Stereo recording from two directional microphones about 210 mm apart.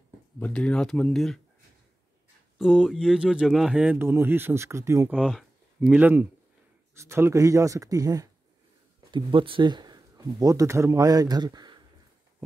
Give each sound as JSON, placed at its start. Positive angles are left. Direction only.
{"t": 0.4, "sound": "speech", "side_deg": 5}
{"t": 2.6, "sound": "speech", "side_deg": 0}